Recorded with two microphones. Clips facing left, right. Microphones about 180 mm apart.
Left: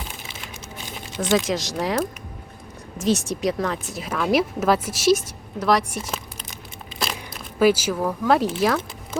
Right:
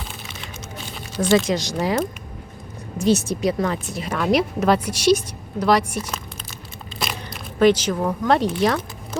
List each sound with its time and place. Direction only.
1.1 s speech: 20° left (ahead or behind)
1.5 s speech: centre (ahead or behind)
3.0 s speech: centre (ahead or behind)
7.0 s a sound: 5° left (ahead or behind)
7.9 s speech: 5° left (ahead or behind)